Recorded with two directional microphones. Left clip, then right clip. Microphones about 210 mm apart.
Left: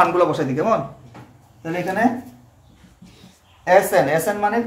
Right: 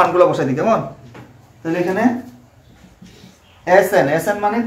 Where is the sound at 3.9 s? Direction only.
35° left (ahead or behind).